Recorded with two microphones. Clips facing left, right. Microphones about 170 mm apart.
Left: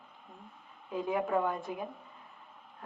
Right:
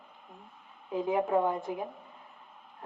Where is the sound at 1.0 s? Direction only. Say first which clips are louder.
Right 3 dB; 20° right (ahead or behind).